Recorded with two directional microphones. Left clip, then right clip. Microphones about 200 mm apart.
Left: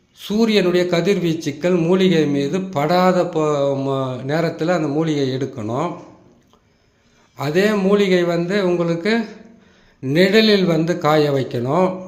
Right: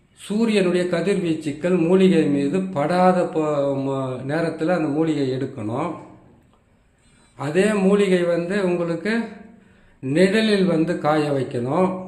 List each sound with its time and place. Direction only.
0.2 s a man's voice: 25° left (ahead or behind)
7.3 s a man's voice: 25° left (ahead or behind)